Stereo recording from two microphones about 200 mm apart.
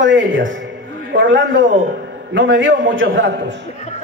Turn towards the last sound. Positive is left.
turn(degrees=35)  # may be behind; listen again after turning